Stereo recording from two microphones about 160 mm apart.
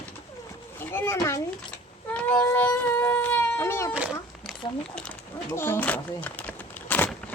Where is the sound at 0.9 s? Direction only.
15° left (ahead or behind).